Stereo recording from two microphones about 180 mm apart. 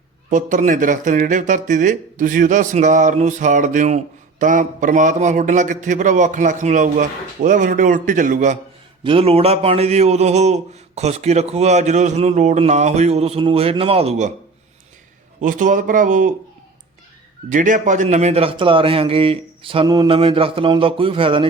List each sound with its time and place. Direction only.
0.3 s speech: 45° right (ahead or behind)
9.0 s a man's voice: 30° right (ahead or behind)
15.4 s speech: 45° right (ahead or behind)
17.5 s a man's voice: 45° right (ahead or behind)